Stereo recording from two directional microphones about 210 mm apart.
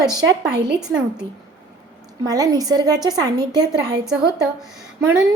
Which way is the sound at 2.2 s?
15° right (ahead or behind).